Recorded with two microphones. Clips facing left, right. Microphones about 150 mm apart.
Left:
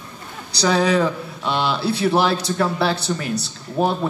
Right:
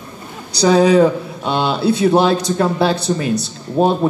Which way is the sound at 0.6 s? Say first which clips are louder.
Right 7 dB; 20° right (ahead or behind).